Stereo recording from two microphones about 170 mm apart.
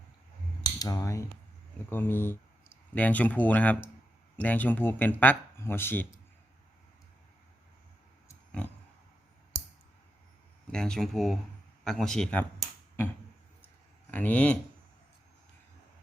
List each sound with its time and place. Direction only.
0.6 s a sound: 20° left (ahead or behind)
1.9 s speech: 10° left (ahead or behind)
10.7 s speech: 5° left (ahead or behind)
14.1 s speech: 10° left (ahead or behind)